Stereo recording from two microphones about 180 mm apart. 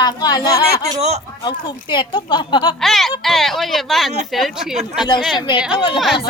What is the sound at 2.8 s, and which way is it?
A woman's voice, centre (ahead or behind).